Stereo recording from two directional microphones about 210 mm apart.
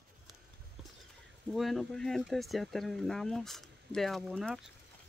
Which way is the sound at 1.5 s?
Centre (ahead or behind).